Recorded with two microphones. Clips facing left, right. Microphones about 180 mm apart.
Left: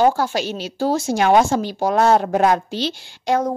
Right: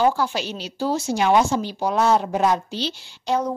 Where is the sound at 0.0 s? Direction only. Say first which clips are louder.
Left 3 dB; 45° left (ahead or behind).